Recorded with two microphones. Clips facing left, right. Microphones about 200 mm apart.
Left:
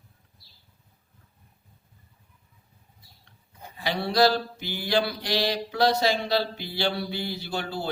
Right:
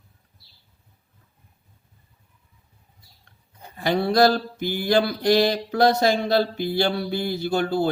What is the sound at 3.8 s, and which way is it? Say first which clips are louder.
Mantra: right 4 dB; 50° right (ahead or behind).